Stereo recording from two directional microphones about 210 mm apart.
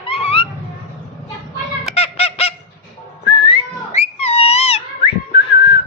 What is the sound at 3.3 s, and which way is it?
Whistling, 25° left (ahead or behind).